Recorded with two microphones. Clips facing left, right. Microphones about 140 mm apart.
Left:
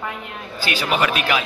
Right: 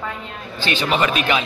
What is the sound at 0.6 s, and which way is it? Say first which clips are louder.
Speech: right 1 dB; 10° left (ahead or behind).